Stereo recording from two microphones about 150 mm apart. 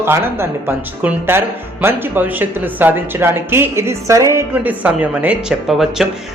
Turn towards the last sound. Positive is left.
turn(degrees=0)  # may be behind; listen again after turning